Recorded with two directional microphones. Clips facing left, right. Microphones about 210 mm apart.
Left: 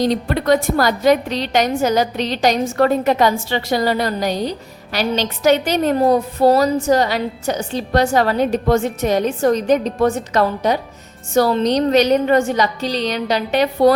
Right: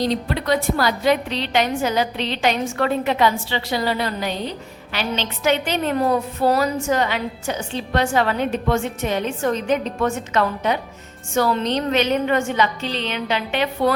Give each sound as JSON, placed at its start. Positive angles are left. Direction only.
{"t": 0.0, "sound": "a woman's voice", "side_deg": 45}